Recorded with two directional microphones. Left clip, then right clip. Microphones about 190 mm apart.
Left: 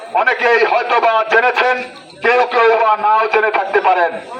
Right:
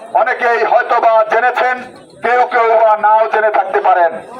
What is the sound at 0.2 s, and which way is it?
A man's voice, 25° right (ahead or behind).